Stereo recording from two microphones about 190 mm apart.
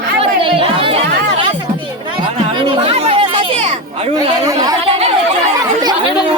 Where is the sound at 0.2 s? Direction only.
30° right (ahead or behind).